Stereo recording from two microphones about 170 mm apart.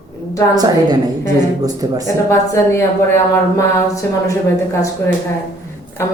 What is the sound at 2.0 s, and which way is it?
A woman's voice, 20° left (ahead or behind).